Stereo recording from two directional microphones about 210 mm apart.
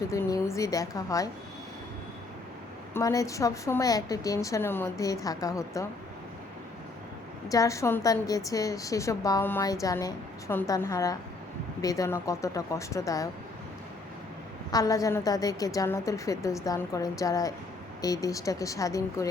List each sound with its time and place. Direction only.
0.1 s a woman's voice: 15° left (ahead or behind)
2.9 s a woman's voice: 15° left (ahead or behind)
7.4 s a woman's voice: 15° left (ahead or behind)
14.7 s a woman's voice: 15° left (ahead or behind)